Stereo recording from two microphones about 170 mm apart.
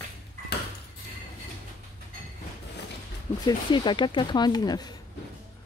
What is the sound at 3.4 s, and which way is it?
Speech, 25° left (ahead or behind).